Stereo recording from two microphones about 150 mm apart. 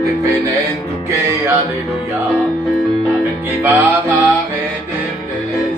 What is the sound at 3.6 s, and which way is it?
Music, 10° right (ahead or behind).